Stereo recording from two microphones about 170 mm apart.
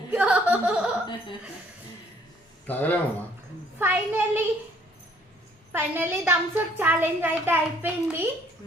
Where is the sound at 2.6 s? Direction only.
10° left (ahead or behind).